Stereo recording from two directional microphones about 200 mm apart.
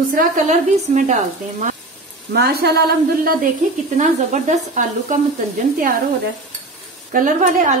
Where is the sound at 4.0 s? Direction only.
40° right (ahead or behind).